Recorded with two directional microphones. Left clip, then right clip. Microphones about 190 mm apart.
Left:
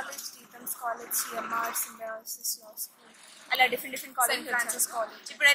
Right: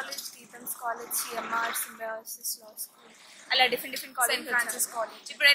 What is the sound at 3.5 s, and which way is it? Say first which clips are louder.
Speech: right 1 dB; 15° right (ahead or behind).